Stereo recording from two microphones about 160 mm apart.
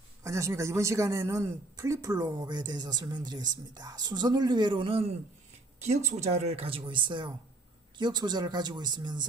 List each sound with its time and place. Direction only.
0.2 s speech: 20° right (ahead or behind)